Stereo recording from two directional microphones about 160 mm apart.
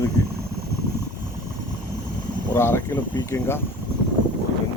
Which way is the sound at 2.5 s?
15° left (ahead or behind).